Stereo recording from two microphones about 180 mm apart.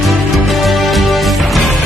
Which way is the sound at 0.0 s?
Centre (ahead or behind).